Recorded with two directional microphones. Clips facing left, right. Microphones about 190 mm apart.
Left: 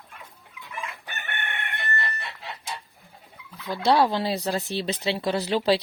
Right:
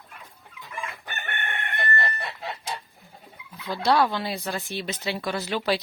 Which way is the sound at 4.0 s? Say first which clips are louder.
Left 2 dB; 30° left (ahead or behind).